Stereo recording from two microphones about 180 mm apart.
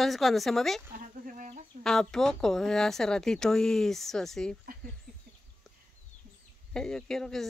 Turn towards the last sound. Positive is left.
turn(degrees=0)  # may be behind; listen again after turning